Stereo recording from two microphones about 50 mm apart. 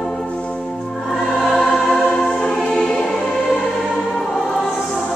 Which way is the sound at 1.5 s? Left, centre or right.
Centre.